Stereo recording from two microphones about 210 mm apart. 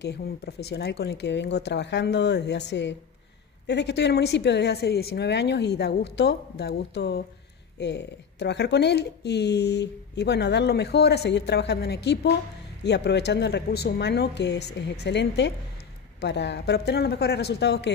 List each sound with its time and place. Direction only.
0.0 s speech: 50° left (ahead or behind)